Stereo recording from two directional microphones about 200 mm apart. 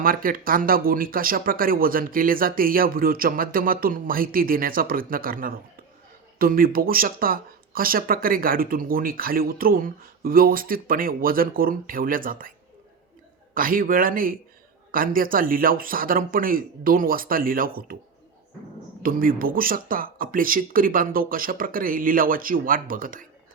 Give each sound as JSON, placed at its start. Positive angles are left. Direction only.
{"t": 0.0, "sound": "speech", "side_deg": -45}
{"t": 19.0, "sound": "speech", "side_deg": -45}